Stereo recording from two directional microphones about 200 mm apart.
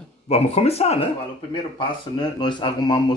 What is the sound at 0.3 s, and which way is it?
Speech, 30° left (ahead or behind).